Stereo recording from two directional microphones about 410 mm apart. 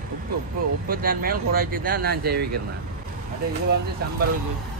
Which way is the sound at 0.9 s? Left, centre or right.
Right.